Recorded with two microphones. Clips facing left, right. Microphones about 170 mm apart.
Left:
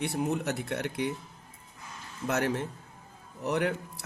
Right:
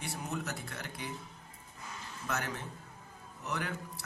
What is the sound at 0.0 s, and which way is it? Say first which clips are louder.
Speech: left 9 dB; 60° left (ahead or behind).